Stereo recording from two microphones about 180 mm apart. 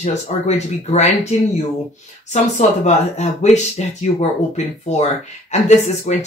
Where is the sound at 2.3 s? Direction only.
40° left (ahead or behind).